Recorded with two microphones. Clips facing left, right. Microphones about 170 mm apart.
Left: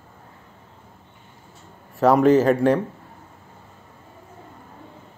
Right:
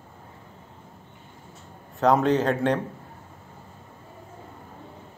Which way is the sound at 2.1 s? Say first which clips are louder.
Left 6 dB; 5° left (ahead or behind).